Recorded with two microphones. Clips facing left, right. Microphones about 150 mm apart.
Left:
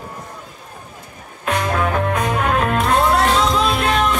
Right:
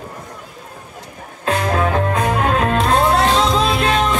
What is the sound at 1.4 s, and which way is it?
Music, 30° right (ahead or behind).